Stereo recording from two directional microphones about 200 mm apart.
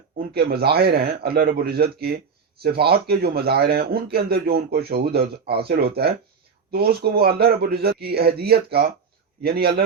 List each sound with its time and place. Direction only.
0.2 s speech: 50° right (ahead or behind)